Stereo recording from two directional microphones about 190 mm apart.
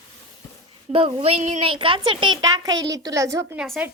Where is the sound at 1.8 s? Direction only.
25° right (ahead or behind).